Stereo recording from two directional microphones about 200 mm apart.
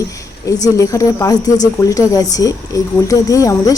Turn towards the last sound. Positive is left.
turn(degrees=15)  # may be behind; listen again after turning